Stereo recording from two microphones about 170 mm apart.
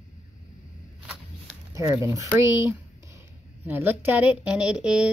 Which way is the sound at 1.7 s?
20° right (ahead or behind).